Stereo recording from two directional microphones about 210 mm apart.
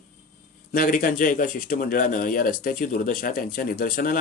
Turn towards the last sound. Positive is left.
turn(degrees=40)  # may be behind; listen again after turning